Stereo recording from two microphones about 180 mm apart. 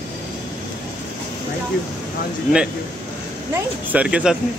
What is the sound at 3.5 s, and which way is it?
Speech, 5° right (ahead or behind).